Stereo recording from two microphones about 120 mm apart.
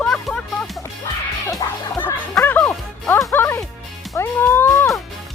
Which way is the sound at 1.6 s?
35° left (ahead or behind).